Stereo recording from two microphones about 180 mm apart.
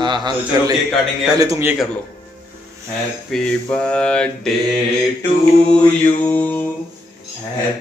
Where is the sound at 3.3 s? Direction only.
5° left (ahead or behind).